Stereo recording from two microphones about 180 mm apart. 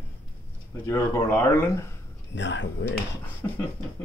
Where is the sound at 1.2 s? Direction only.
10° left (ahead or behind).